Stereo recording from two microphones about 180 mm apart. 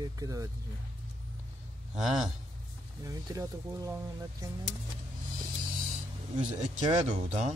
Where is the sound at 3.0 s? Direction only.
20° right (ahead or behind).